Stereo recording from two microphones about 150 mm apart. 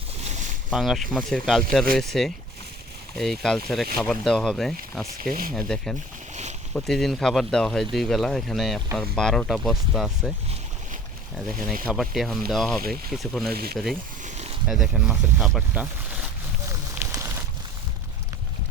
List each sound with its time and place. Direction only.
0.7 s speech: centre (ahead or behind)
5.2 s speech: 65° right (ahead or behind)
5.5 s speech: 5° left (ahead or behind)
11.9 s speech: centre (ahead or behind)
13.5 s speech: 90° right
14.3 s zipper: 50° right (ahead or behind)
14.7 s speech: centre (ahead or behind)
17.0 s a sound: 15° right (ahead or behind)